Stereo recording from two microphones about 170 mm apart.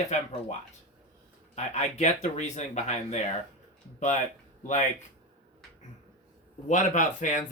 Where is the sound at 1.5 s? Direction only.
40° left (ahead or behind).